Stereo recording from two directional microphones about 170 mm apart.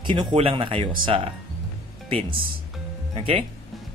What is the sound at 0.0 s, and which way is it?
Speech, 30° right (ahead or behind).